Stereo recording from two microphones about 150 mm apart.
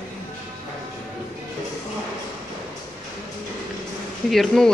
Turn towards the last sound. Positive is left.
turn(degrees=0)  # may be behind; listen again after turning